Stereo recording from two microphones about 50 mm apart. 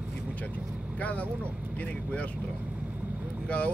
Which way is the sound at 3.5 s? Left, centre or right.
Left.